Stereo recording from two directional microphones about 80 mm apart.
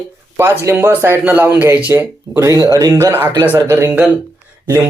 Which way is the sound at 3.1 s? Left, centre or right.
Right.